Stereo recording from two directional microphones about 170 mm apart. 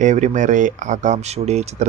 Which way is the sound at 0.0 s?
45° right (ahead or behind).